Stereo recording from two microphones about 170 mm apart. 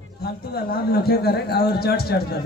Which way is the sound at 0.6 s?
65° left (ahead or behind).